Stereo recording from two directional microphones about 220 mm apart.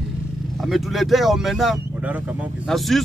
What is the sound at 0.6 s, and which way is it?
Speech, centre (ahead or behind).